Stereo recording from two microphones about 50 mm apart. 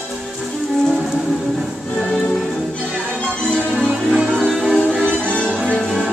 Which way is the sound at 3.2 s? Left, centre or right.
Left.